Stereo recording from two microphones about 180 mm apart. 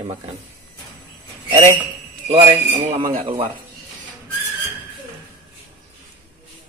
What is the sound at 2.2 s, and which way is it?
Speech, 30° right (ahead or behind).